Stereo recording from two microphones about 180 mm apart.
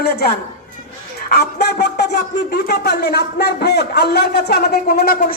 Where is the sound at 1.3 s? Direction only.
65° left (ahead or behind).